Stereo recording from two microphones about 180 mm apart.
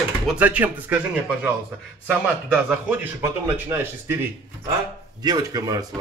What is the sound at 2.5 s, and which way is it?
A man's voice, 10° right (ahead or behind).